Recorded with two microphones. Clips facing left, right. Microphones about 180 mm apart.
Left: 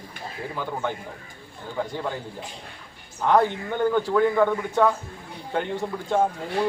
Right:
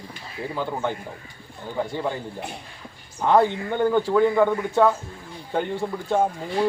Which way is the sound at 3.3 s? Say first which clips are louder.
Right 2 dB; 15° right (ahead or behind).